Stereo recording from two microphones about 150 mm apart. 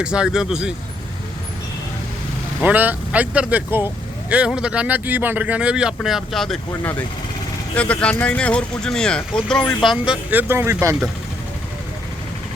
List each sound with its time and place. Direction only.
0.0 s speech: 5° right (ahead or behind)
2.6 s speech: 10° right (ahead or behind)
7.8 s speech: 10° left (ahead or behind)
10.2 s speech: 10° right (ahead or behind)